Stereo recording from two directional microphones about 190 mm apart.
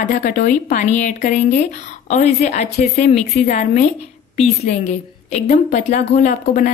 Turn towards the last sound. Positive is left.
turn(degrees=45)  # may be behind; listen again after turning